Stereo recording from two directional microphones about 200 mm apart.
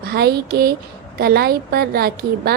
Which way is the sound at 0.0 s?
50° right (ahead or behind).